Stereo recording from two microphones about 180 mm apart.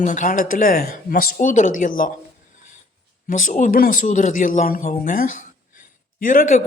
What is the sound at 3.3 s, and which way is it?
Speech, 45° left (ahead or behind).